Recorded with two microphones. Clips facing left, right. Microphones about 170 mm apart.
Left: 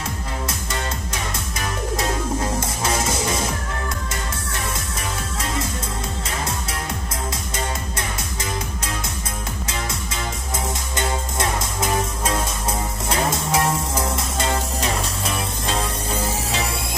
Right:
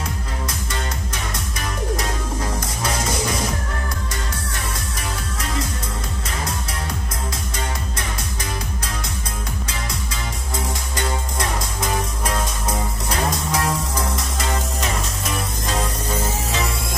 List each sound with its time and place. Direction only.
13.3 s music: 25° left (ahead or behind)